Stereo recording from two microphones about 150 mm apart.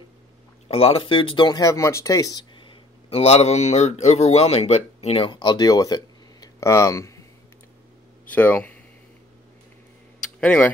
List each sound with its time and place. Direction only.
0.7 s speech: 40° left (ahead or behind); by 7.2 s 20° left (ahead or behind)
8.3 s a man's voice: 10° left (ahead or behind)
10.4 s a man's voice: 10° left (ahead or behind)